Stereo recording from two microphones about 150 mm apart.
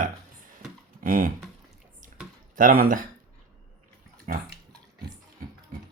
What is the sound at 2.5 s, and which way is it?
Speech, 70° right (ahead or behind).